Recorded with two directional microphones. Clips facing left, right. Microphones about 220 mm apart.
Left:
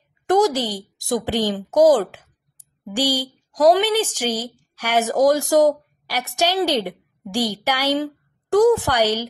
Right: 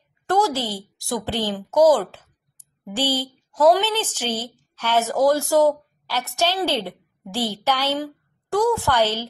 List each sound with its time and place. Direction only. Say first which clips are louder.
0.3 s a woman's voice: left 4 dB; 15° left (ahead or behind)